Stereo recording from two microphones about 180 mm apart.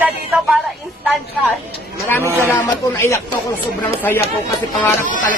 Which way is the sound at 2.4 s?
10° left (ahead or behind).